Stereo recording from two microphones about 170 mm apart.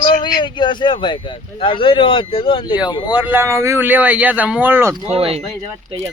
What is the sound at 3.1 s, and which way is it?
Speech, 10° right (ahead or behind).